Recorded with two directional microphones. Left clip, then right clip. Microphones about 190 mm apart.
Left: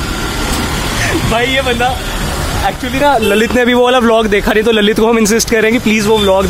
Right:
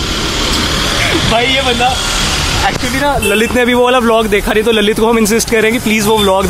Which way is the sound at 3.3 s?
10° left (ahead or behind).